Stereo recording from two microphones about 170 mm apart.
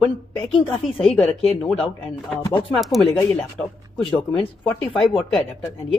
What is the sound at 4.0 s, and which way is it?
Speech, 30° left (ahead or behind).